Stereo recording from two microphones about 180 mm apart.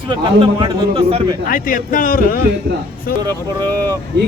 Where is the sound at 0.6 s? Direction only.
30° right (ahead or behind).